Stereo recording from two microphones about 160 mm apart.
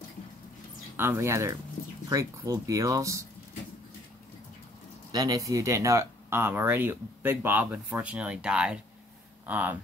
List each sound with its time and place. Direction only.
0.9 s speech: 15° right (ahead or behind)
5.1 s speech: 20° right (ahead or behind)